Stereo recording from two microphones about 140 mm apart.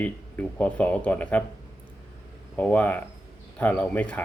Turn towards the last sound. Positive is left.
turn(degrees=10)  # may be behind; listen again after turning